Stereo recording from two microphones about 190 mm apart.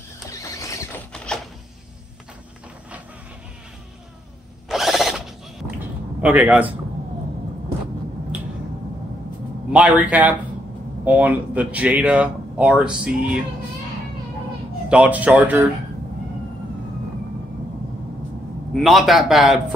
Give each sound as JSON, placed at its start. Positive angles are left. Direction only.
{"t": 0.3, "sound": "vehicle", "side_deg": 15}
{"t": 1.1, "sound": "a sound", "side_deg": 5}
{"t": 4.6, "sound": "tools", "side_deg": 0}
{"t": 6.2, "sound": "speech", "side_deg": -10}
{"t": 9.7, "sound": "speech", "side_deg": -5}
{"t": 14.9, "sound": "speech", "side_deg": -5}
{"t": 18.7, "sound": "a man's voice", "side_deg": 0}